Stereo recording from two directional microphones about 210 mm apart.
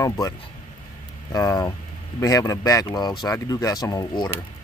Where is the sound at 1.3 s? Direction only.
15° left (ahead or behind).